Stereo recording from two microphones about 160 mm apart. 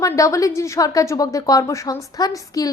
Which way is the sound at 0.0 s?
20° left (ahead or behind).